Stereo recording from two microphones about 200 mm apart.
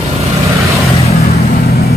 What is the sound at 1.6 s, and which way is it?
Vehicle, 50° left (ahead or behind).